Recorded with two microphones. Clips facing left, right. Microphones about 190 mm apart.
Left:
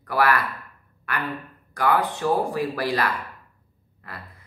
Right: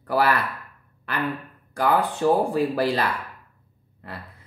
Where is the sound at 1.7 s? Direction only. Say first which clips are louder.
Right 1 dB; 30° right (ahead or behind).